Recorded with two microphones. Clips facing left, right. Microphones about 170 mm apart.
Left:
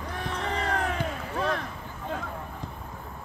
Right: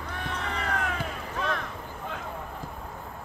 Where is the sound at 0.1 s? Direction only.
35° left (ahead or behind).